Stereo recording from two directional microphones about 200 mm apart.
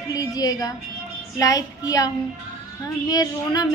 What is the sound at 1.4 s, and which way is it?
Child singing, 20° left (ahead or behind).